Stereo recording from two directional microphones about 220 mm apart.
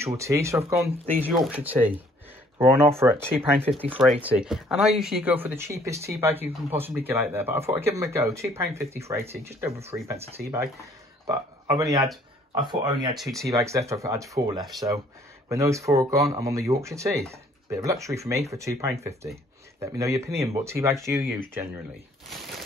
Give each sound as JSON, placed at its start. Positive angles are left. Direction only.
{"t": 0.0, "sound": "speech", "side_deg": -15}
{"t": 1.2, "sound": "speech", "side_deg": 0}
{"t": 3.0, "sound": "speech", "side_deg": -15}